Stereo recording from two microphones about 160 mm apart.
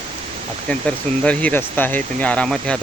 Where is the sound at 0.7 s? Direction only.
5° left (ahead or behind).